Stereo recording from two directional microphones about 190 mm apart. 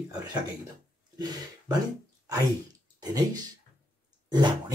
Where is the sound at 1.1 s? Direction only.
20° right (ahead or behind).